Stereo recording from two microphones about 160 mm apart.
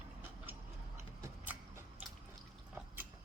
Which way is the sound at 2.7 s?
10° right (ahead or behind).